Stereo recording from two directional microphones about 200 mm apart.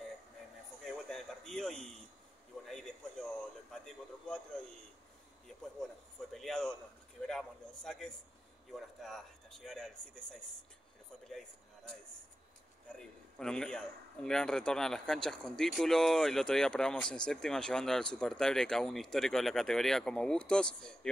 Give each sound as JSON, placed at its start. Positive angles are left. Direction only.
{"t": 0.8, "sound": "a sound", "side_deg": 0}
{"t": 3.7, "sound": "a man's voice", "side_deg": 5}
{"t": 6.3, "sound": "a man's voice", "side_deg": 0}
{"t": 11.2, "sound": "a man's voice", "side_deg": 0}
{"t": 13.0, "sound": "a man's voice", "side_deg": 5}